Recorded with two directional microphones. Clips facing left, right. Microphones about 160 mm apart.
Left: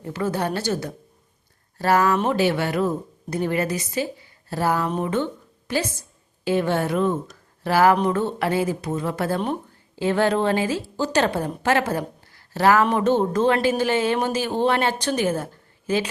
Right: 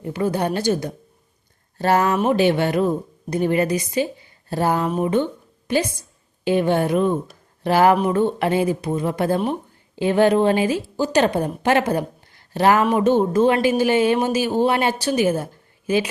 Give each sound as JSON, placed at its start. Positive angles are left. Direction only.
{"t": 0.0, "sound": "a woman's voice", "side_deg": -15}
{"t": 12.8, "sound": "a woman's voice", "side_deg": -10}